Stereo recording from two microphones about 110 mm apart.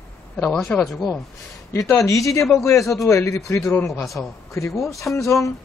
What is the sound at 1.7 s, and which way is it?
Speech, 25° left (ahead or behind).